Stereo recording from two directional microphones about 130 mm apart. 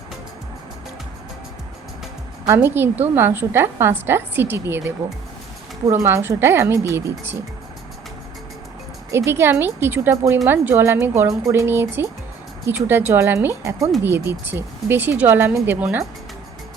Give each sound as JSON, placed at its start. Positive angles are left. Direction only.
{"t": 2.5, "sound": "a woman's voice", "side_deg": -15}
{"t": 9.1, "sound": "a woman's voice", "side_deg": -20}